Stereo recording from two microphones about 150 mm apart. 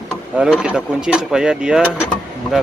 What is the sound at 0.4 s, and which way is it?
Speech, 5° right (ahead or behind).